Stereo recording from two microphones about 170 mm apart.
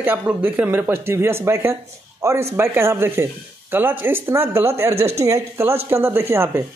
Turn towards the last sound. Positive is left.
turn(degrees=-15)  # may be behind; listen again after turning